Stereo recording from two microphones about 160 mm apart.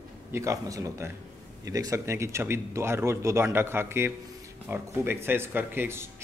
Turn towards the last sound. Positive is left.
turn(degrees=-15)  # may be behind; listen again after turning